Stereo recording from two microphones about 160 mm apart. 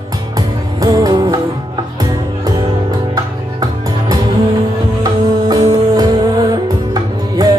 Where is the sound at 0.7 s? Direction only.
25° right (ahead or behind).